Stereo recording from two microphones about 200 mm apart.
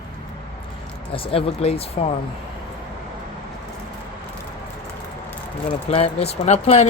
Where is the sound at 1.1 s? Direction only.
30° left (ahead or behind).